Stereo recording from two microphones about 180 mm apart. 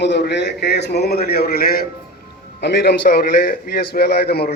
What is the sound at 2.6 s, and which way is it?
A man's voice, 70° left (ahead or behind).